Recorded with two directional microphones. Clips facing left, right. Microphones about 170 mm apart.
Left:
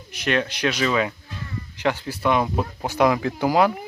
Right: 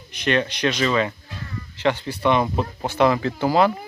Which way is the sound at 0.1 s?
5° left (ahead or behind).